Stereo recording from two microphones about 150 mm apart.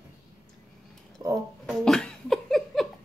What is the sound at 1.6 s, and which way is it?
Laughter, 5° left (ahead or behind).